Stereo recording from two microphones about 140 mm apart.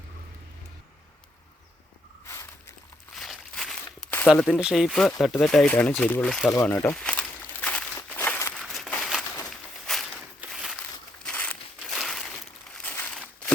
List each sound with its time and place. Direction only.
2.2 s a sound: 20° left (ahead or behind)
3.2 s walk: 5° left (ahead or behind)
4.5 s speech: 5° right (ahead or behind)
6.5 s speech: 20° left (ahead or behind)
6.9 s walk: 10° left (ahead or behind)
8.6 s a sound: centre (ahead or behind)
9.5 s walk: centre (ahead or behind)
11.3 s a sound: 10° left (ahead or behind)
11.8 s crumpling: centre (ahead or behind)